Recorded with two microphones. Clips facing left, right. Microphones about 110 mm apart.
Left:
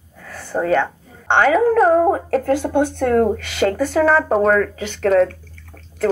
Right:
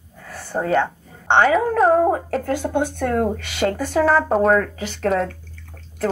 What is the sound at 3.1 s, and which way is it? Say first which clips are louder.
Speech: left 5 dB; 15° right (ahead or behind).